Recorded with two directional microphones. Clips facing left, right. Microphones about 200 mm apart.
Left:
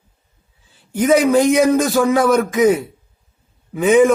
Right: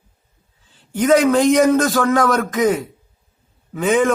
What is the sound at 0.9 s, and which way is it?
A man's voice, 10° left (ahead or behind).